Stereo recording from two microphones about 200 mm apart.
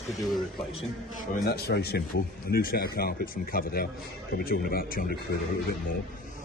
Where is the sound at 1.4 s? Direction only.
55° left (ahead or behind).